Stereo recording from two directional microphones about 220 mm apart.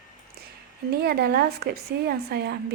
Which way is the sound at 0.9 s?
45° right (ahead or behind).